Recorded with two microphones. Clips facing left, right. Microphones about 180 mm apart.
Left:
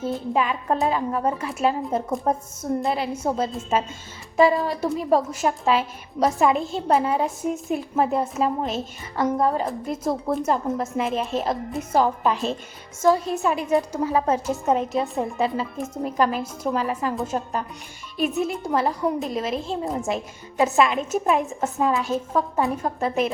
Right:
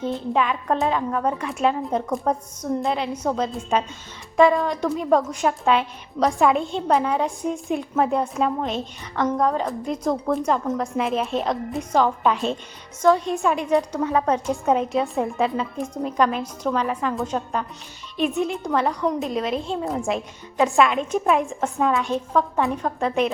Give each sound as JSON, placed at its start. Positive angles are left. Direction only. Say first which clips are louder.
{"t": 0.0, "sound": "a woman's voice", "louder": "right 1 dB", "side_deg": 5}
{"t": 14.0, "sound": "speech", "louder": "even", "side_deg": 30}
{"t": 14.3, "sound": "a woman's voice", "louder": "right 1 dB", "side_deg": 5}